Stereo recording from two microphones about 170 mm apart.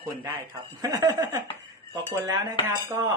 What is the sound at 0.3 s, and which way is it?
Speech, 15° right (ahead or behind).